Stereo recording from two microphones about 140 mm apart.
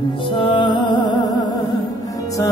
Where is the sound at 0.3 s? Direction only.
35° left (ahead or behind).